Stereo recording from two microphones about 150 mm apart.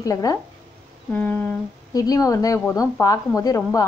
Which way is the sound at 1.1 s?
10° left (ahead or behind).